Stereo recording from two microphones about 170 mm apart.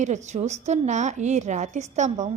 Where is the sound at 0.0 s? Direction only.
45° right (ahead or behind).